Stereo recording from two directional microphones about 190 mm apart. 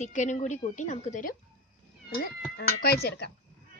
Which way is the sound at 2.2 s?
55° left (ahead or behind).